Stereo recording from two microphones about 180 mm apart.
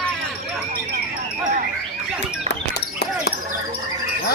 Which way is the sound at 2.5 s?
65° left (ahead or behind).